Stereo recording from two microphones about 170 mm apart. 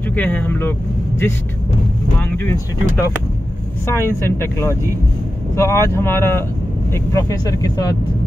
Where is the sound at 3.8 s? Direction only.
15° left (ahead or behind).